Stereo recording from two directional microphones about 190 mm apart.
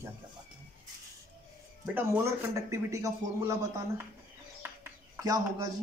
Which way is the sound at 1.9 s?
10° right (ahead or behind).